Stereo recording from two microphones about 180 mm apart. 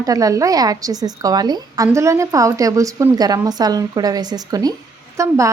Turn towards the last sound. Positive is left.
turn(degrees=-15)  # may be behind; listen again after turning